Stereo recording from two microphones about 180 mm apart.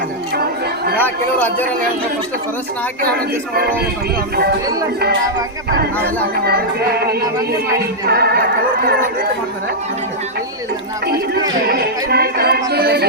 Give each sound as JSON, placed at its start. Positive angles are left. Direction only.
{"t": 0.9, "sound": "speech", "side_deg": 10}
{"t": 3.0, "sound": "speech", "side_deg": -60}
{"t": 6.4, "sound": "speech", "side_deg": -60}
{"t": 11.7, "sound": "speech", "side_deg": -60}